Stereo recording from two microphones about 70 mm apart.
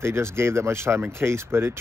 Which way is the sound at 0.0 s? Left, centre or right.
Right.